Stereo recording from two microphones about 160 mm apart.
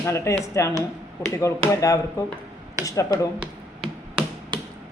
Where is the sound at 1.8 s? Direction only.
20° left (ahead or behind).